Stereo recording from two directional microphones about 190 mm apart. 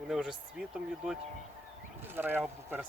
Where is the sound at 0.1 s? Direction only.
5° right (ahead or behind).